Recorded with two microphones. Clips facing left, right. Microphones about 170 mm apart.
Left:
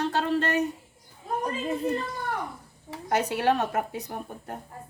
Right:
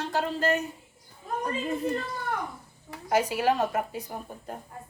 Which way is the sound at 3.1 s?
65° left (ahead or behind).